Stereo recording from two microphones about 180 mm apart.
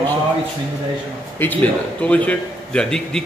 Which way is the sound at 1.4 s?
10° left (ahead or behind).